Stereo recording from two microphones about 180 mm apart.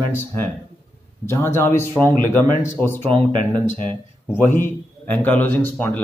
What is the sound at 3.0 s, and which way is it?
Speech, 30° right (ahead or behind).